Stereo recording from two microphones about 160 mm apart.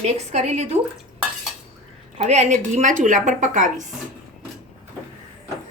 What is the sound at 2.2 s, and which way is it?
Speech, 45° right (ahead or behind).